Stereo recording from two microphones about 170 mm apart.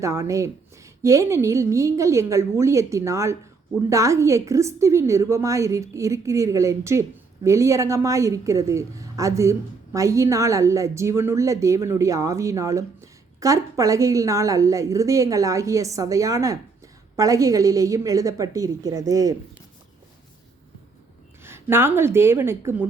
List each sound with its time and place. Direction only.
0.0 s a woman's voice: 20° right (ahead or behind)
21.4 s a woman's voice: 15° right (ahead or behind)